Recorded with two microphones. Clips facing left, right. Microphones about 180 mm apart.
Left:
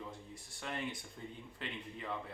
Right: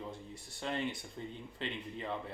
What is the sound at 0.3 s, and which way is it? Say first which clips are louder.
Speech: right 5 dB; 25° right (ahead or behind).